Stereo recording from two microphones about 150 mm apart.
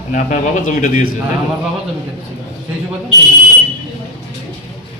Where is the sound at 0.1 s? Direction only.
60° left (ahead or behind).